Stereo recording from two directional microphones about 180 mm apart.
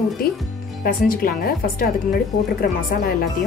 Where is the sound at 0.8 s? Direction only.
55° left (ahead or behind).